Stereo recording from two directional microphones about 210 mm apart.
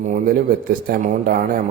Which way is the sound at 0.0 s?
40° right (ahead or behind).